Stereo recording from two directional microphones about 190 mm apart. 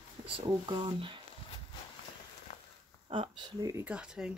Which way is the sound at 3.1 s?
25° right (ahead or behind).